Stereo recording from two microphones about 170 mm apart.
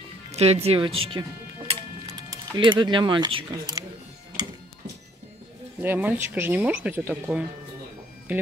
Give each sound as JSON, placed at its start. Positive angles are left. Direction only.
{"t": 0.3, "sound": "speech", "side_deg": -40}
{"t": 1.7, "sound": "music", "side_deg": -35}
{"t": 2.1, "sound": "speech", "side_deg": -25}
{"t": 5.8, "sound": "speech", "side_deg": -10}